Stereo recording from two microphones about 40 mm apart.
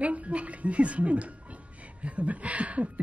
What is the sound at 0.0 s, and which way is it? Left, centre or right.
A woman's voice, right.